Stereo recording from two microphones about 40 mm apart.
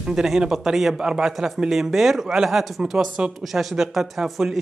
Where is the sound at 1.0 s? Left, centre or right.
Centre.